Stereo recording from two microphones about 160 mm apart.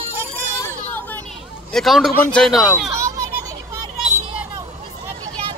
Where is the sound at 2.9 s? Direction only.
20° right (ahead or behind).